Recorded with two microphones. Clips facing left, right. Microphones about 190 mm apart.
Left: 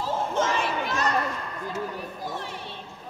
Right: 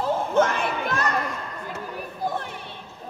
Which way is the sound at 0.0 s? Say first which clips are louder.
Right 5 dB; 55° right (ahead or behind).